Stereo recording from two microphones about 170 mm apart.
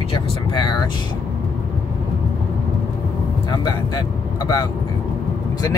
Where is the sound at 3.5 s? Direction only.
25° left (ahead or behind).